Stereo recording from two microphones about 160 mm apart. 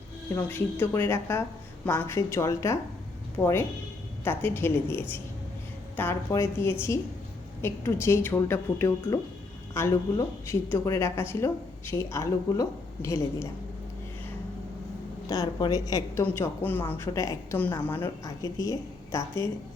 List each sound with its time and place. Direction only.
0.3 s speech: 10° left (ahead or behind)
15.3 s a woman's voice: 25° left (ahead or behind)